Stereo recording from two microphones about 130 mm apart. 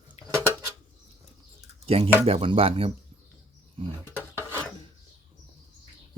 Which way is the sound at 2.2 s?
45° right (ahead or behind).